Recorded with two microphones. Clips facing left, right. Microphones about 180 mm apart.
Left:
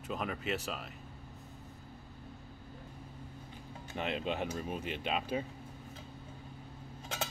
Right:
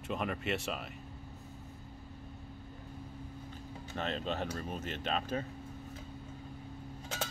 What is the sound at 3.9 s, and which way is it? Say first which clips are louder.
Speech: left 1 dB; 10° left (ahead or behind).